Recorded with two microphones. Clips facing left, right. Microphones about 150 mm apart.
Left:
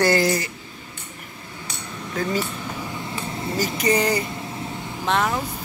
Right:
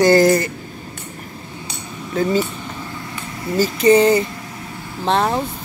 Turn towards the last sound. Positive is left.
turn(degrees=-35)  # may be behind; listen again after turning